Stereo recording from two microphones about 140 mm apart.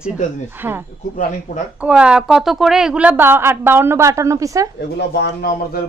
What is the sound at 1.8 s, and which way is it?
A woman's voice, 10° right (ahead or behind).